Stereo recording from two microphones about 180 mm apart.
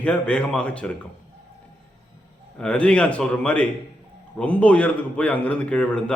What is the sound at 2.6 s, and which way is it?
A man's voice, 5° left (ahead or behind).